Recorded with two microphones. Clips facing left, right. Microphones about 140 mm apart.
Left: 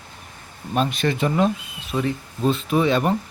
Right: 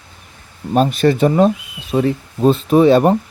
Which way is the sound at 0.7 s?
40° right (ahead or behind).